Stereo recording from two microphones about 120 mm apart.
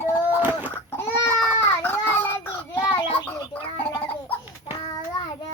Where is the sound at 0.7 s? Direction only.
20° left (ahead or behind).